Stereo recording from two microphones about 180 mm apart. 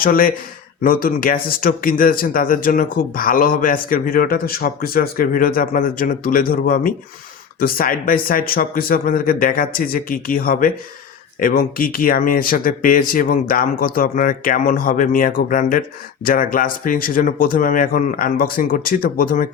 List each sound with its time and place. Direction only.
0.0 s speech: 50° left (ahead or behind)